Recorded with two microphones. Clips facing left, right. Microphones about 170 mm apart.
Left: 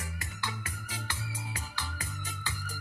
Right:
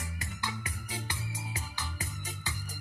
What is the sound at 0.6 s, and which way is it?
Music, 20° right (ahead or behind).